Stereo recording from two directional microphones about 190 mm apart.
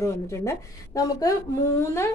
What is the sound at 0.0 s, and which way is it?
A woman's voice, 15° left (ahead or behind).